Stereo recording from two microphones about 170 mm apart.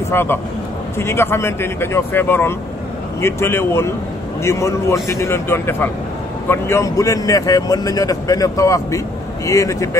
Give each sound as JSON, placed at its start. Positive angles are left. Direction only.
{"t": 0.1, "sound": "a man's voice", "side_deg": 15}